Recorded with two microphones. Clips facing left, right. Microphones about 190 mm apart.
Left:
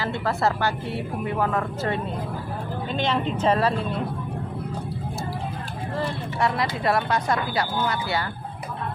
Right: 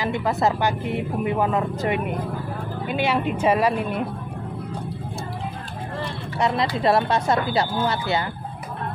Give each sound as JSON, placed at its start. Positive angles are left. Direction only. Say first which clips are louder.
{"t": 0.0, "sound": "a woman's voice", "louder": "right 2 dB", "side_deg": -15}
{"t": 6.4, "sound": "speech", "louder": "right 3 dB", "side_deg": -20}